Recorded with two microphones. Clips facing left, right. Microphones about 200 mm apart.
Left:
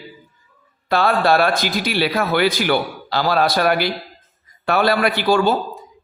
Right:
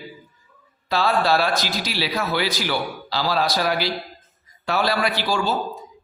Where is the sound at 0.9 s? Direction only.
55° left (ahead or behind).